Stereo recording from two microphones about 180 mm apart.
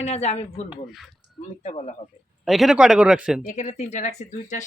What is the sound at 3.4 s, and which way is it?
Speech, 40° left (ahead or behind).